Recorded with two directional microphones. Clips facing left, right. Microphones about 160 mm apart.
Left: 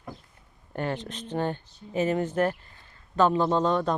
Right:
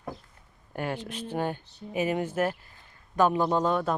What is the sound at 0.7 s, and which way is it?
Speech, 10° right (ahead or behind).